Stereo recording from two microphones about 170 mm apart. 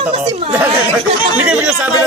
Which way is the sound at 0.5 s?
10° right (ahead or behind).